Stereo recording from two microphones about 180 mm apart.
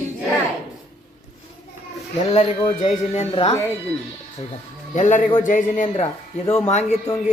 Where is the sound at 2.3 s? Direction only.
35° left (ahead or behind).